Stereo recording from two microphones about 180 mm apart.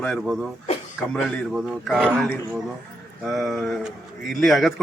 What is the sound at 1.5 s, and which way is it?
Speech, 5° right (ahead or behind).